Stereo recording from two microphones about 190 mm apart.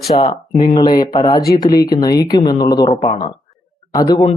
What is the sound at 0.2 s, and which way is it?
Speech, 20° left (ahead or behind).